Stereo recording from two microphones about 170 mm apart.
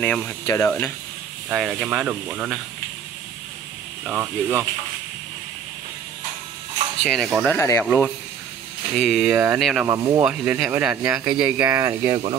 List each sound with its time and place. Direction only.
0.0 s speech: 10° left (ahead or behind)
1.5 s speech: 10° right (ahead or behind)
4.0 s speech: centre (ahead or behind)
7.0 s speech: centre (ahead or behind)
7.4 s speech: 15° left (ahead or behind)
9.8 s speech: 20° right (ahead or behind)
10.2 s speech: 5° right (ahead or behind)
11.6 s speech: 15° right (ahead or behind)